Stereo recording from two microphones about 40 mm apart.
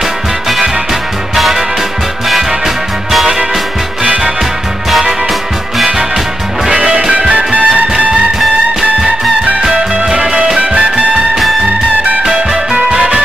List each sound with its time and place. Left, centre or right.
1.3 s music: centre
3.1 s music: centre
6.7 s music: centre
7.3 s music: right
10.0 s music: centre
10.6 s music: right
12.9 s music: right